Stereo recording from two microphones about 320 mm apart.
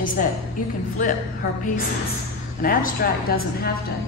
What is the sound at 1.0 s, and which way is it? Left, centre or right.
Speech, left.